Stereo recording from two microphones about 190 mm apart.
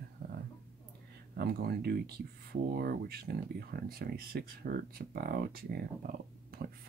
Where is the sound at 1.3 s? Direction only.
55° right (ahead or behind).